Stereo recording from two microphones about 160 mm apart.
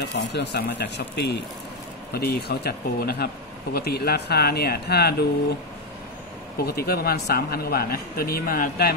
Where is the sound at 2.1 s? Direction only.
80° left.